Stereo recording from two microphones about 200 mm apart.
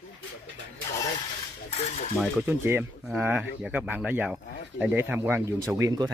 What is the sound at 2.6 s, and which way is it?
Speech, 10° right (ahead or behind).